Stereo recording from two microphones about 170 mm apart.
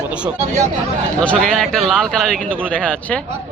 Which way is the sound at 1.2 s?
5° left (ahead or behind).